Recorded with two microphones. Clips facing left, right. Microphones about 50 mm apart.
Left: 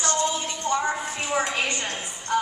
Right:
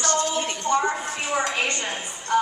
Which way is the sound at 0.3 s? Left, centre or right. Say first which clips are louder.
Right 3 dB; right.